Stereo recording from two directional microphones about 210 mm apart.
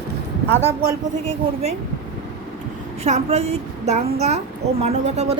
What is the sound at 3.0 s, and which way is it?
A woman's voice, 30° right (ahead or behind).